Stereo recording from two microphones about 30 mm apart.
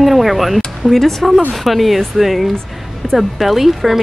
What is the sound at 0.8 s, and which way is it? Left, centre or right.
Speech, centre.